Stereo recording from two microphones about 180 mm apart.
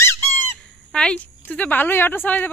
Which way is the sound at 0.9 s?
5° left (ahead or behind).